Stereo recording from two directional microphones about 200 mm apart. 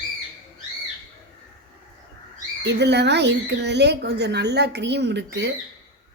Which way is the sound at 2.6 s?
60° right (ahead or behind).